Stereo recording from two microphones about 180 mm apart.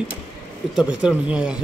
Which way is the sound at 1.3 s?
5° right (ahead or behind).